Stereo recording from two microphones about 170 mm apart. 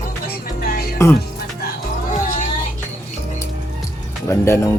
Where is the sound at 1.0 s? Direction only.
15° left (ahead or behind).